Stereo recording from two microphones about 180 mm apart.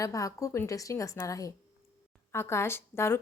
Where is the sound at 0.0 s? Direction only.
20° left (ahead or behind).